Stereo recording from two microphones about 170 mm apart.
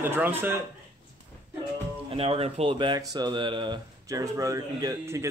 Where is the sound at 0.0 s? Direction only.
10° right (ahead or behind).